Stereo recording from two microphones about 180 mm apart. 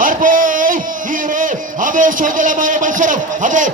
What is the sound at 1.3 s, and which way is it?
A man's voice, 45° right (ahead or behind).